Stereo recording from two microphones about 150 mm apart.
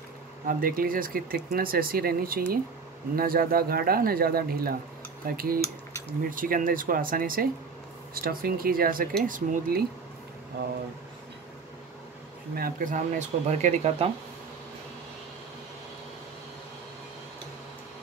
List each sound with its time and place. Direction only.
0.5 s speech: 70° right (ahead or behind); by 4.7 s 90° right
5.2 s speech: 75° right (ahead or behind)
9.2 s speech: 65° right (ahead or behind)
12.5 s speech: 70° right (ahead or behind); by 14.1 s 45° right (ahead or behind)